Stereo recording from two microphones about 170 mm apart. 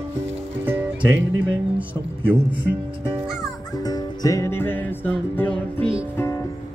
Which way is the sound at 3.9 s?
20° left (ahead or behind).